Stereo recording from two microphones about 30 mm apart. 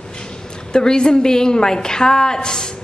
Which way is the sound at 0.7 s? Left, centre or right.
Left.